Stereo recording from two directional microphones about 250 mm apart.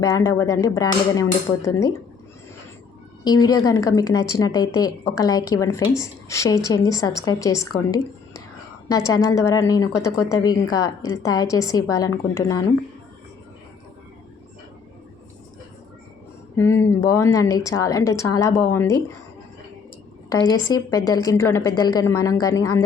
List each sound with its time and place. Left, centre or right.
0.0 s speech: centre
3.2 s speech: centre
8.9 s speech: centre
16.6 s speech: centre
20.3 s speech: centre